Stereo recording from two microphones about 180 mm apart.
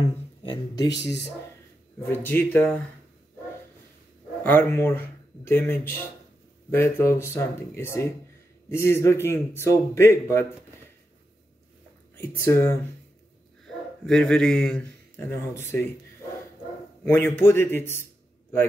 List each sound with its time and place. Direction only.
0.0 s a sound: 30° left (ahead or behind)
2.0 s a man's voice: 10° left (ahead or behind)
4.4 s a man's voice: 10° left (ahead or behind)
12.4 s a man's voice: 15° left (ahead or behind)
14.0 s a man's voice: 5° left (ahead or behind)
17.0 s a man's voice: 10° left (ahead or behind)